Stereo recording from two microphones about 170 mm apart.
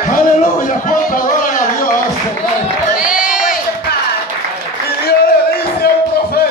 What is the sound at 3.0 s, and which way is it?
Crowd, 5° right (ahead or behind).